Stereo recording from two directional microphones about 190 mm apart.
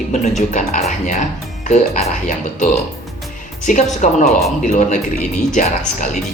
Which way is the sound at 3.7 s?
40° left (ahead or behind).